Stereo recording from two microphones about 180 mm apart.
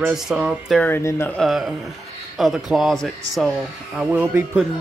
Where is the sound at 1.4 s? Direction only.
Centre (ahead or behind).